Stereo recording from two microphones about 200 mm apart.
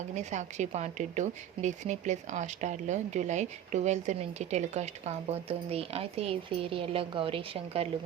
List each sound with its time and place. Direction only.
0.1 s speech: 35° right (ahead or behind)